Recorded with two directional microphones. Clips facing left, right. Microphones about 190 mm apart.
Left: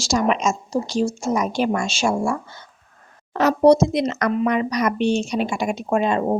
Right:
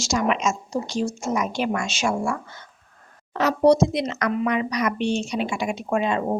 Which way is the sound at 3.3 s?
45° left (ahead or behind).